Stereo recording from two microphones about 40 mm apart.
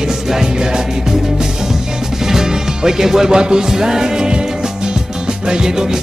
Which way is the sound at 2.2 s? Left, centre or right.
Centre.